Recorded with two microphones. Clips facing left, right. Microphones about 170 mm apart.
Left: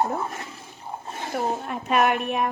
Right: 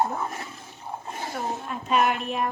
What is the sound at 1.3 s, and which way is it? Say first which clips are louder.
A woman's voice: left 6 dB; 60° left (ahead or behind).